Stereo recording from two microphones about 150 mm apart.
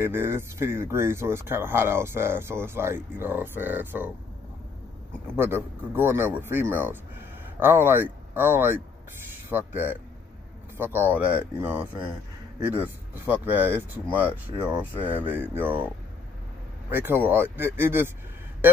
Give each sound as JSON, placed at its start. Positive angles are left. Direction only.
{"t": 0.0, "sound": "speech", "side_deg": -15}
{"t": 5.3, "sound": "speech", "side_deg": -15}
{"t": 16.9, "sound": "speech", "side_deg": -15}